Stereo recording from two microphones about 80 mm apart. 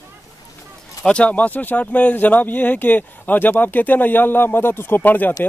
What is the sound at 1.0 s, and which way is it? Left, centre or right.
Speech, centre.